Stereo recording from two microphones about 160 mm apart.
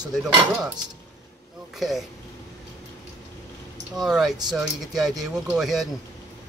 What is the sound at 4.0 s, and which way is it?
Speech, centre (ahead or behind).